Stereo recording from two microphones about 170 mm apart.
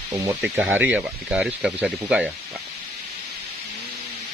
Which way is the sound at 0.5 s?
10° right (ahead or behind).